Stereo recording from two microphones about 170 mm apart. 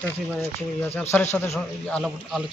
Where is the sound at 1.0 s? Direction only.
10° left (ahead or behind).